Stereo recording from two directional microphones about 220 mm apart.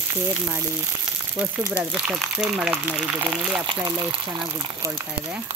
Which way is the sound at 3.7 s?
20° right (ahead or behind).